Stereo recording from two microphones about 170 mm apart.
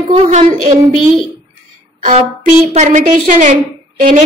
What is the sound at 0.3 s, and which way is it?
Speech, 45° right (ahead or behind).